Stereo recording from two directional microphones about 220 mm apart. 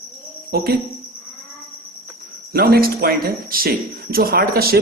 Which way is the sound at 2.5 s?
45° right (ahead or behind).